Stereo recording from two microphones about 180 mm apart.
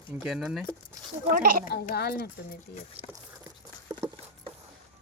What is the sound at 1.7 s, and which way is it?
Speech, 60° left (ahead or behind).